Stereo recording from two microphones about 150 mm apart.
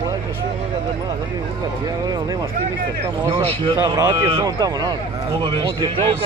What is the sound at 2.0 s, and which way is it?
Speech, 25° right (ahead or behind).